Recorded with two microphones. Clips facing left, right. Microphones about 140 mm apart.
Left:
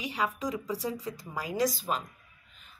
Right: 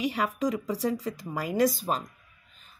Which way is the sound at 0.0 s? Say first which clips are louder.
Right 5 dB; 60° right (ahead or behind).